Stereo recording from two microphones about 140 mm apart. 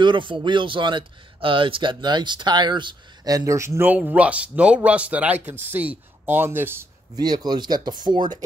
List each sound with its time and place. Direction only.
0.0 s speech: 35° right (ahead or behind); by 6.9 s 15° right (ahead or behind)
7.2 s speech: 30° right (ahead or behind)